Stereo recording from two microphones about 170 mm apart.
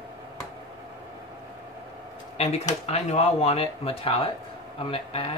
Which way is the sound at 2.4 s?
40° left (ahead or behind).